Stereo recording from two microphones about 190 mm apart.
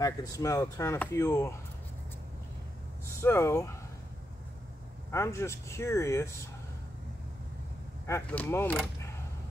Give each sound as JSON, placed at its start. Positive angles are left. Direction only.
{"t": 0.0, "sound": "speech", "side_deg": 20}
{"t": 3.1, "sound": "speech", "side_deg": 15}
{"t": 5.1, "sound": "speech", "side_deg": 15}
{"t": 8.1, "sound": "speech", "side_deg": 10}